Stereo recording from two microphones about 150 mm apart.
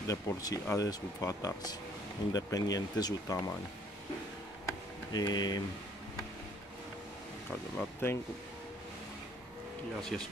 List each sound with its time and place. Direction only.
0.0 s speech: 25° left (ahead or behind)
4.6 s a sound: 25° left (ahead or behind)
7.7 s speech: 15° left (ahead or behind)
10.1 s speech: centre (ahead or behind)